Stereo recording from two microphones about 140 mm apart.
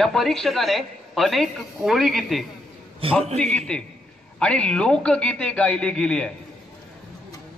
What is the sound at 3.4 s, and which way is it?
A man's voice, 5° left (ahead or behind).